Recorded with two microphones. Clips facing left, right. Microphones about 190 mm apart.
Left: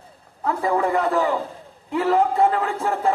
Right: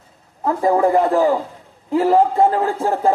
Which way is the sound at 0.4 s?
35° right (ahead or behind).